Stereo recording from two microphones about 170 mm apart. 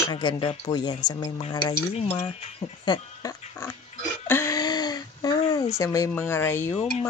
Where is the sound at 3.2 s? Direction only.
15° left (ahead or behind).